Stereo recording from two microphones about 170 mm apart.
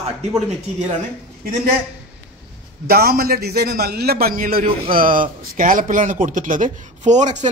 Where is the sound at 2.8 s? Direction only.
60° right (ahead or behind).